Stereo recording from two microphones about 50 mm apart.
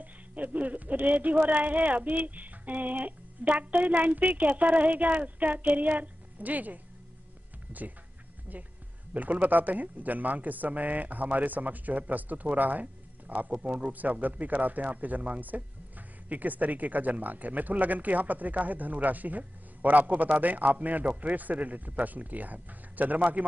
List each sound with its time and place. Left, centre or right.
0.0 s speech: right
9.1 s speech: right